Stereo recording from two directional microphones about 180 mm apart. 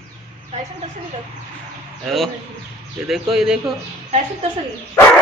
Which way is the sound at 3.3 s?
5° right (ahead or behind).